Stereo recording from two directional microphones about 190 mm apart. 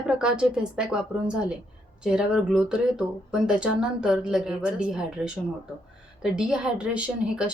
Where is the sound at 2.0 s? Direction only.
5° right (ahead or behind).